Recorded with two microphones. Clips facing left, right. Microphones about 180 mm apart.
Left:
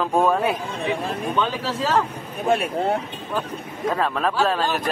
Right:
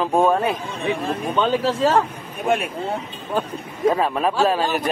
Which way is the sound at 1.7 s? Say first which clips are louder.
Right 4 dB; 30° right (ahead or behind).